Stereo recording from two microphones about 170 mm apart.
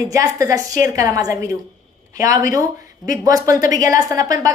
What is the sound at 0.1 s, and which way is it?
A woman's voice, 20° right (ahead or behind).